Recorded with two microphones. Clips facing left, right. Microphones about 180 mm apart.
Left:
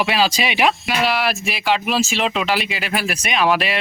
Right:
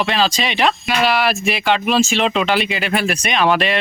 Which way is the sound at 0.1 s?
10° left (ahead or behind).